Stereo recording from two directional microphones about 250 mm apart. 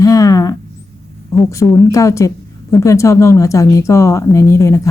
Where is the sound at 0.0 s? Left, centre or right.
Centre.